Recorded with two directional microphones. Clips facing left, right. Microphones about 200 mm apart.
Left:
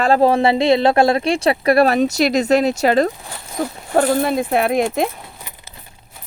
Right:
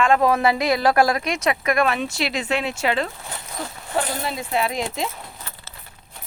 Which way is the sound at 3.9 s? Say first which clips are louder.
Left 10 dB; 50° left (ahead or behind).